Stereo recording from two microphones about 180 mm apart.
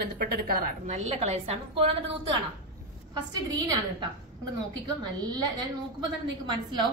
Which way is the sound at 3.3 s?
20° right (ahead or behind).